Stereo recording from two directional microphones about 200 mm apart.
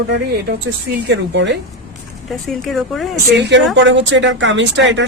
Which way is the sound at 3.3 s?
60° right (ahead or behind).